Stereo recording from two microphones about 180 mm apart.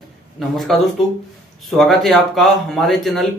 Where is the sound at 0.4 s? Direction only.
Centre (ahead or behind).